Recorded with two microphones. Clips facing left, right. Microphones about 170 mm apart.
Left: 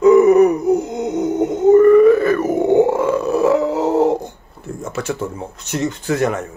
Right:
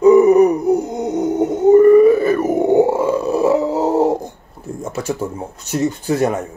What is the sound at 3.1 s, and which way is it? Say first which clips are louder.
Dog: even; 30° right (ahead or behind).